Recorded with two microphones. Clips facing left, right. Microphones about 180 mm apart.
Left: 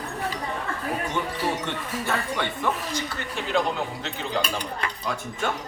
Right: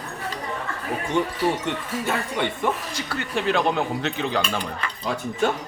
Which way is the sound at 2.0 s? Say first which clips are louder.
Right 2 dB; 15° right (ahead or behind).